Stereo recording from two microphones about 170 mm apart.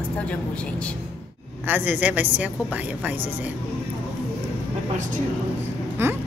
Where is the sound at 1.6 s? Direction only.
10° right (ahead or behind).